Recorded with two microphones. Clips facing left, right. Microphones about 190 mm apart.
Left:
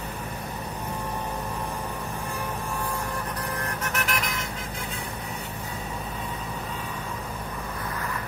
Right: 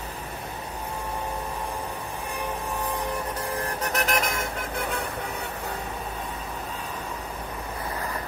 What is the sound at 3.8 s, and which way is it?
Vehicle, 40° right (ahead or behind).